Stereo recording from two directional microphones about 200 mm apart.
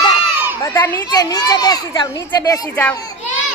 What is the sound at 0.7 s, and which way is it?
A child's voice, 15° left (ahead or behind).